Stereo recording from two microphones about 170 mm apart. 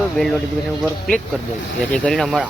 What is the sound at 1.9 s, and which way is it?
Speech, 5° left (ahead or behind).